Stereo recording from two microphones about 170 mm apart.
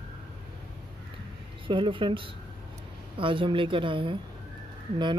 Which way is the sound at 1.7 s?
30° right (ahead or behind).